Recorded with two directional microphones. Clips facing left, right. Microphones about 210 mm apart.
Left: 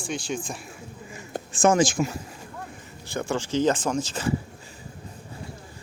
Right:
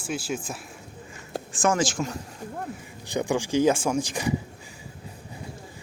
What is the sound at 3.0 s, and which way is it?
Speech, 15° right (ahead or behind).